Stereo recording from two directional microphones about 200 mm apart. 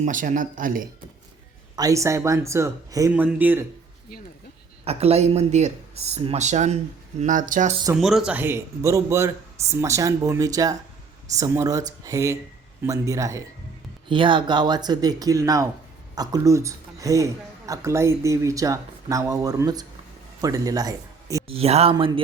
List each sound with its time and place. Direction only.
0.0 s speech: 40° right (ahead or behind)
1.7 s speech: 15° right (ahead or behind)
4.9 s speech: 30° right (ahead or behind)
7.9 s speech: centre (ahead or behind); by 21.4 s 15° right (ahead or behind)
21.4 s speech: 30° right (ahead or behind)